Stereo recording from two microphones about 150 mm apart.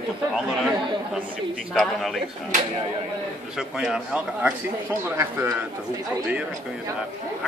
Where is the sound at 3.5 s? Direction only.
5° right (ahead or behind).